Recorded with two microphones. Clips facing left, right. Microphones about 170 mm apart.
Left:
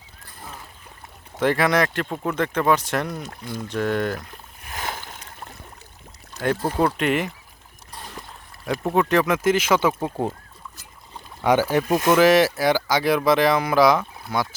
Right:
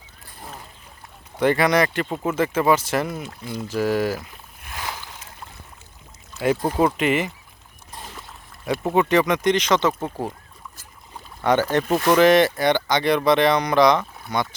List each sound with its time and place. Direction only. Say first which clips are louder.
1.4 s speech: right 1 dB; centre (ahead or behind)
4.7 s boat: left 1 dB; 50° left (ahead or behind)
6.7 s speech: even; 5° right (ahead or behind)
8.6 s speech: right 1 dB; centre (ahead or behind)
11.4 s speech: even; 10° left (ahead or behind)